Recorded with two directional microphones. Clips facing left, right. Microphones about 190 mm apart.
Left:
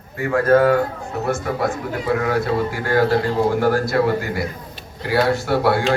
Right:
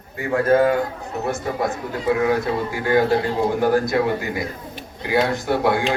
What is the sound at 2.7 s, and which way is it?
A man's voice, 15° right (ahead or behind).